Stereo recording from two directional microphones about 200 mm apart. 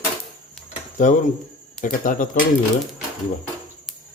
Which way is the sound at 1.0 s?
40° left (ahead or behind).